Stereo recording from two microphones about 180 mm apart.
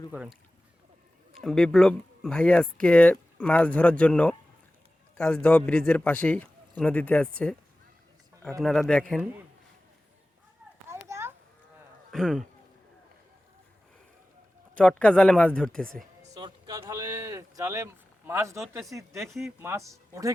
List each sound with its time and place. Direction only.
0.1 s a man's voice: 5° right (ahead or behind)
8.6 s speech: 5° left (ahead or behind)
10.8 s children playing: 15° right (ahead or behind)
12.1 s speech: centre (ahead or behind)
14.8 s speech: 5° left (ahead or behind)
16.4 s speech: 20° right (ahead or behind)